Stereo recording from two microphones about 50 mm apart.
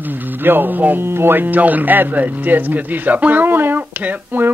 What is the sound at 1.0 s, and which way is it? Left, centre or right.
Speech, right.